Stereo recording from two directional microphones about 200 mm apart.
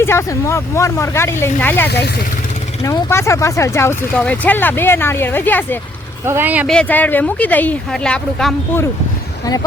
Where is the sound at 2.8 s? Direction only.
15° left (ahead or behind).